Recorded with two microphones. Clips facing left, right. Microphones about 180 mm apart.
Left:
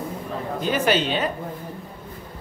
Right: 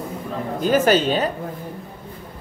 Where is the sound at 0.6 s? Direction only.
45° right (ahead or behind).